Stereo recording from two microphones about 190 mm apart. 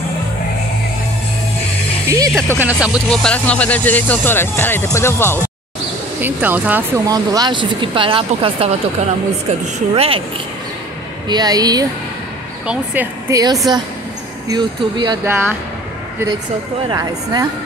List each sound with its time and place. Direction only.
2.0 s music: 20° right (ahead or behind)
2.3 s speech: 10° left (ahead or behind)
2.8 s speech: centre (ahead or behind)
6.2 s speech: 10° right (ahead or behind)
7.1 s speech: 20° right (ahead or behind)
11.2 s speech: 20° right (ahead or behind)
12.6 s speech: 10° right (ahead or behind)
13.4 s speech: 20° right (ahead or behind)
15.2 s speech: 10° right (ahead or behind)
16.9 s speech: 20° right (ahead or behind)